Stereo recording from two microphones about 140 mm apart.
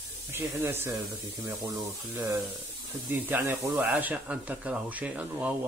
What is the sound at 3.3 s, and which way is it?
Speech, 15° right (ahead or behind).